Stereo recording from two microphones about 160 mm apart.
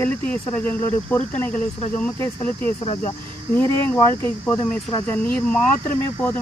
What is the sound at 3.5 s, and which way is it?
Speech, 15° left (ahead or behind).